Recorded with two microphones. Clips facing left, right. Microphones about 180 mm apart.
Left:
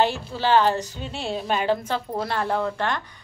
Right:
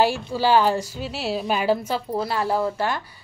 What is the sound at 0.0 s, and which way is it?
A woman's voice, 10° right (ahead or behind).